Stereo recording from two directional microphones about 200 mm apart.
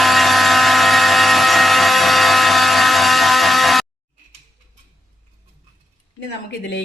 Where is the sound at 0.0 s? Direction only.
Centre (ahead or behind).